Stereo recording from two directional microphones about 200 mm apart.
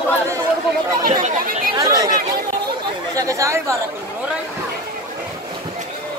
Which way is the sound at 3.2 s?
15° right (ahead or behind).